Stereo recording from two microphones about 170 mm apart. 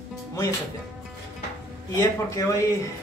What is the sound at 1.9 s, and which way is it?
Speech, 20° left (ahead or behind).